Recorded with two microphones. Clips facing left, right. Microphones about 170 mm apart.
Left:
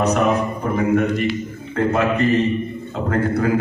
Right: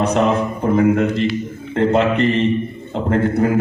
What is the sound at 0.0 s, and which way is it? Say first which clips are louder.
Speech: right 1 dB; 25° right (ahead or behind).